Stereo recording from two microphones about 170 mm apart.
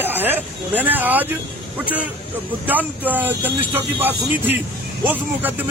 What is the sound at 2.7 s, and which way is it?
Speech, 10° right (ahead or behind).